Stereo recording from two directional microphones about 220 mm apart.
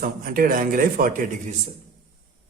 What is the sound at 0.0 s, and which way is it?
A man's voice, 40° right (ahead or behind).